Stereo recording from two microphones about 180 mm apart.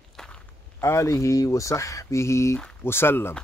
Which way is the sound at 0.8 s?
15° left (ahead or behind).